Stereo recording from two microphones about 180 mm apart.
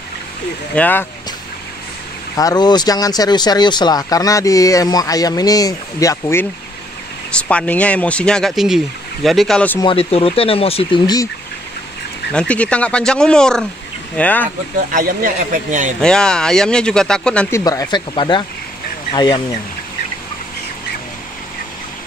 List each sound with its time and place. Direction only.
0.7 s speech: 10° left (ahead or behind)
2.3 s speech: 20° left (ahead or behind)
7.3 s speech: 5° left (ahead or behind)
9.8 s speech: 30° left (ahead or behind)
12.3 s speech: 5° left (ahead or behind)
14.9 s speech: 50° right (ahead or behind)
16.0 s speech: 5° left (ahead or behind); by 19.4 s 25° left (ahead or behind)